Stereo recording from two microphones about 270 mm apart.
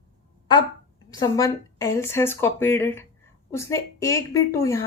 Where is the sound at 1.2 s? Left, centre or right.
Centre.